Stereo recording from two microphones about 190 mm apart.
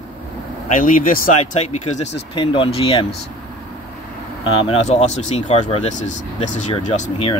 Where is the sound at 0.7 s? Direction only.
45° left (ahead or behind); by 3.1 s 30° left (ahead or behind).